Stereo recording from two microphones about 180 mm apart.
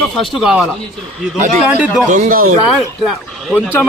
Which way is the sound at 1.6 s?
10° right (ahead or behind).